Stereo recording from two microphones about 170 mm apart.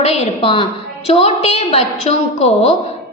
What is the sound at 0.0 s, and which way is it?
A woman's voice, 35° left (ahead or behind).